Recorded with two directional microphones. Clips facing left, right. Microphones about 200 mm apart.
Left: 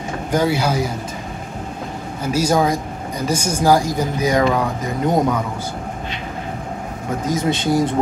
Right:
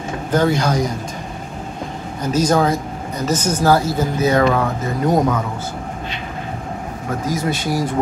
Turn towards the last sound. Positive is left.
turn(degrees=20)  # may be behind; listen again after turning